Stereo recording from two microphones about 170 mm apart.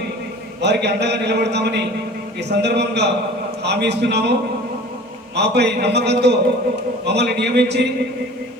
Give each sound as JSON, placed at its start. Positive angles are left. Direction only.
{"t": 0.6, "sound": "a man's voice", "side_deg": -80}
{"t": 5.4, "sound": "a man's voice", "side_deg": -80}